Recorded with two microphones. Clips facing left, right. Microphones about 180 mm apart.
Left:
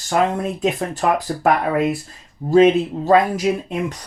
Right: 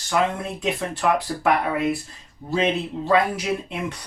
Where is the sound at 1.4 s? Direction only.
45° left (ahead or behind).